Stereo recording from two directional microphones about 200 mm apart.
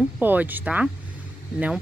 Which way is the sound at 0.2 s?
10° right (ahead or behind).